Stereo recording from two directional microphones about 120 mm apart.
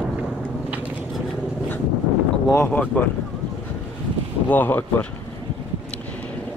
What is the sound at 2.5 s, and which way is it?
Speech, 15° left (ahead or behind).